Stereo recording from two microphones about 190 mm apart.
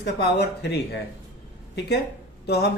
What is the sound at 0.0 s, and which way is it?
Speech, 60° left (ahead or behind).